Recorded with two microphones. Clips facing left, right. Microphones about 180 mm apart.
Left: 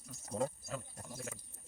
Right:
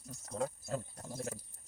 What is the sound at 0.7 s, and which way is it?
Speech, 35° right (ahead or behind).